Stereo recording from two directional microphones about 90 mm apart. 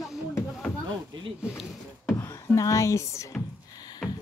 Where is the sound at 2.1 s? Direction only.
30° left (ahead or behind).